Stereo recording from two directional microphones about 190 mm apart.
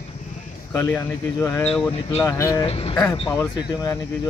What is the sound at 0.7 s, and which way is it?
Speech, 15° left (ahead or behind).